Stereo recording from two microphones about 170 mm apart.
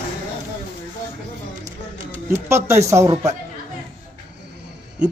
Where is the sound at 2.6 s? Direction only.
15° right (ahead or behind).